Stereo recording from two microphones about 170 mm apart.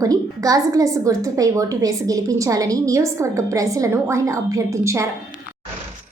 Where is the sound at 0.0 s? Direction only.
20° right (ahead or behind).